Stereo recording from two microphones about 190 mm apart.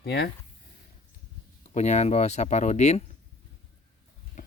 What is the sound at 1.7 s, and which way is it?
Speech, 35° left (ahead or behind).